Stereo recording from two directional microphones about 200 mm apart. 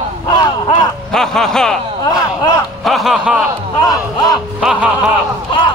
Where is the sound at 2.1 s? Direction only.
20° left (ahead or behind).